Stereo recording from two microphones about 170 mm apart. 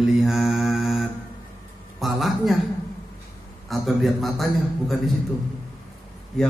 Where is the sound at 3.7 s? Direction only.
Centre (ahead or behind).